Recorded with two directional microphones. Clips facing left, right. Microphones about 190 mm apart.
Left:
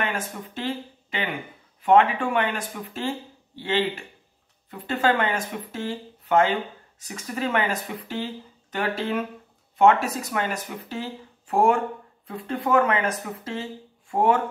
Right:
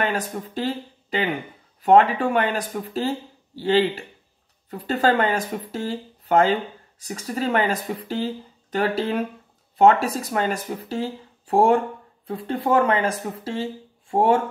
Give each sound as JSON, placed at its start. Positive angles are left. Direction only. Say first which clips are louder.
{"t": 0.0, "sound": "speech", "louder": "right 4 dB", "side_deg": -35}